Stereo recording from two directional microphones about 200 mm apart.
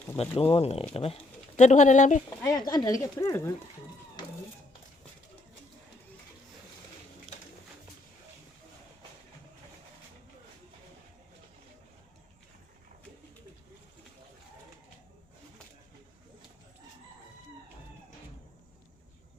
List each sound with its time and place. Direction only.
0.2 s speech: 30° left (ahead or behind)
2.4 s speech: 20° left (ahead or behind)